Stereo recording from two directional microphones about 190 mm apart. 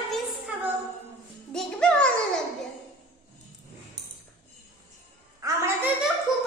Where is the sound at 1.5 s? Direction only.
5° left (ahead or behind).